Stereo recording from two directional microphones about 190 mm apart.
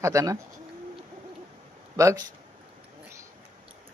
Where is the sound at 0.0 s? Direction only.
15° right (ahead or behind).